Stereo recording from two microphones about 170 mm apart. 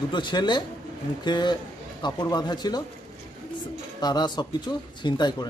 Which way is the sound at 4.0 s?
25° left (ahead or behind).